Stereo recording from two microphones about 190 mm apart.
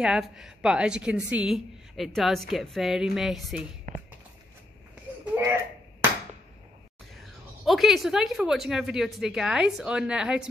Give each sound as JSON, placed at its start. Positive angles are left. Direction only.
{"t": 0.0, "sound": "a woman's voice", "side_deg": -5}
{"t": 3.9, "sound": "a sound", "side_deg": -40}
{"t": 5.2, "sound": "slap", "side_deg": -10}
{"t": 7.2, "sound": "a woman's voice", "side_deg": 0}